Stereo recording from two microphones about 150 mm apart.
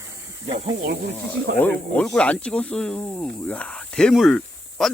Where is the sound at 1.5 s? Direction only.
10° left (ahead or behind).